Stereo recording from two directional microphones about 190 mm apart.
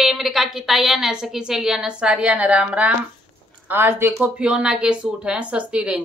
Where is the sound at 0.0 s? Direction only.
Centre (ahead or behind).